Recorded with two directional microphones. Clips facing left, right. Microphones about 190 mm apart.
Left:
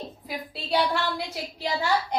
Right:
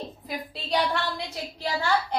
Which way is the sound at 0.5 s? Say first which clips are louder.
Left 1 dB; 5° left (ahead or behind).